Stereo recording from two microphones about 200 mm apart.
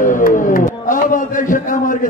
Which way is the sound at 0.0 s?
40° left (ahead or behind).